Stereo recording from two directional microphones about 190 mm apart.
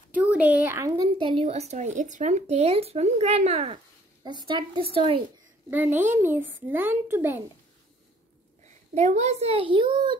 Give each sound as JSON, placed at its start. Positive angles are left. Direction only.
{"t": 0.1, "sound": "a sound", "side_deg": -10}
{"t": 1.1, "sound": "speech", "side_deg": -30}
{"t": 5.7, "sound": "speech", "side_deg": -10}
{"t": 8.6, "sound": "speech", "side_deg": -35}